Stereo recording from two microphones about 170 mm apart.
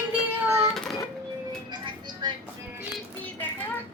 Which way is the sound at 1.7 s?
25° right (ahead or behind).